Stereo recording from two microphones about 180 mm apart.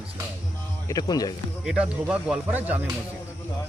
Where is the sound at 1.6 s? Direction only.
5° right (ahead or behind).